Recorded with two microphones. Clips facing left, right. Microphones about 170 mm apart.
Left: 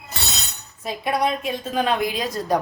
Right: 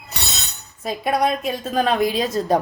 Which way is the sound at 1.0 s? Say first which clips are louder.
Right 2 dB; 40° right (ahead or behind).